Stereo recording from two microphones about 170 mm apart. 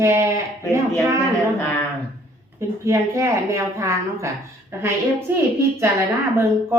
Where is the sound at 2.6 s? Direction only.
15° right (ahead or behind).